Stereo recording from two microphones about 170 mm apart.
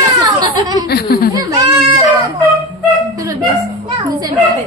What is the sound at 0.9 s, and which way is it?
Snicker, 65° left (ahead or behind).